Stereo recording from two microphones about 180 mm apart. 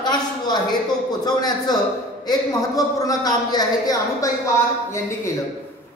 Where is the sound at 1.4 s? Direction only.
20° left (ahead or behind).